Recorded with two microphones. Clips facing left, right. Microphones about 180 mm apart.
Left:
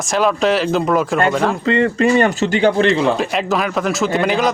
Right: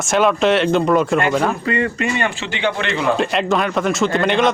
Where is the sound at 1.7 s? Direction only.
30° left (ahead or behind).